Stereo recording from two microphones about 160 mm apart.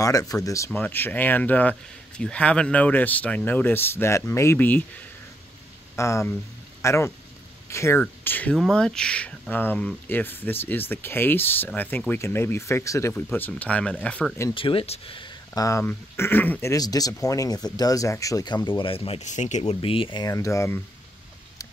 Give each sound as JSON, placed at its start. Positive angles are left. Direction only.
{"t": 0.0, "sound": "speech", "side_deg": 20}
{"t": 5.9, "sound": "speech", "side_deg": 15}
{"t": 14.5, "sound": "speech", "side_deg": 35}
{"t": 16.7, "sound": "speech", "side_deg": 25}